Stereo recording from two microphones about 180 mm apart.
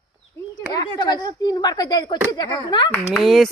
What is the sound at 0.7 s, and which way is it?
Speech, 25° left (ahead or behind).